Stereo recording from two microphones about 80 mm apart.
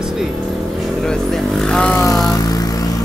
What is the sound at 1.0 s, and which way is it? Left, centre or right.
Vehicle, centre.